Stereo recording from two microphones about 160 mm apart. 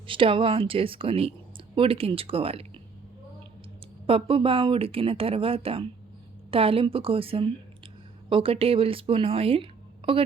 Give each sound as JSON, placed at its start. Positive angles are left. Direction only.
{"t": 0.1, "sound": "speech", "side_deg": -30}
{"t": 4.0, "sound": "speech", "side_deg": -35}